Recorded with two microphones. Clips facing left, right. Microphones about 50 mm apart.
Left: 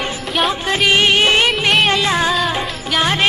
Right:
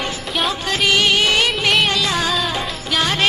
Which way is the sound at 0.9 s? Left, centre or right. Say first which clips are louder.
Left 3 dB; left.